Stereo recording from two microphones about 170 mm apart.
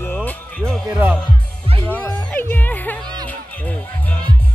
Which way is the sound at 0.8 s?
10° right (ahead or behind).